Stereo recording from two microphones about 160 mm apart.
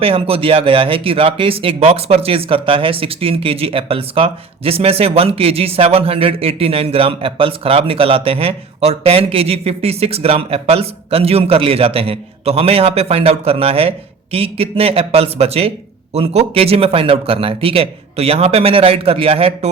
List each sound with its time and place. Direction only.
0.0 s speech: 35° right (ahead or behind)